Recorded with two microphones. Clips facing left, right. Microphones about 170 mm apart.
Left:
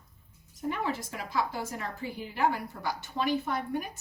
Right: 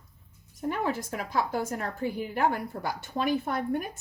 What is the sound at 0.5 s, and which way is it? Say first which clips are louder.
A woman's voice: right 3 dB; 45° right (ahead or behind).